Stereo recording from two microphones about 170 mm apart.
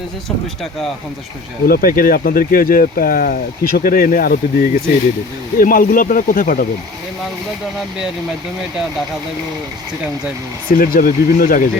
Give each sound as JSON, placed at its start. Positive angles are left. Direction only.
{"t": 1.6, "sound": "speech", "side_deg": 60}
{"t": 10.7, "sound": "speech", "side_deg": 55}